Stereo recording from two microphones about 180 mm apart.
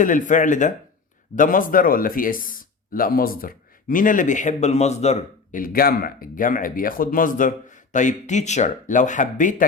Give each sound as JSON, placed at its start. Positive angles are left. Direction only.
{"t": 0.0, "sound": "speech", "side_deg": 45}